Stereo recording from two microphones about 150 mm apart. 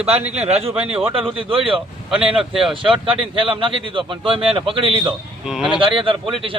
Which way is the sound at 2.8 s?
35° right (ahead or behind).